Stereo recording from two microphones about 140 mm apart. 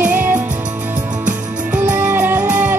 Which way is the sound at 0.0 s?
10° right (ahead or behind).